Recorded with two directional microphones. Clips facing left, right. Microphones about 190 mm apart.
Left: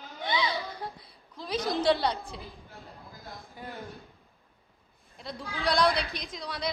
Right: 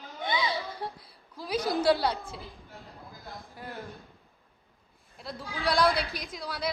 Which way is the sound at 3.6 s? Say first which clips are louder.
Even; centre (ahead or behind).